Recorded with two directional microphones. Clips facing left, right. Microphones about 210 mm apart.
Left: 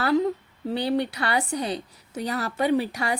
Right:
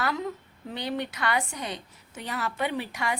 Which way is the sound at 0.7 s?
35° left (ahead or behind).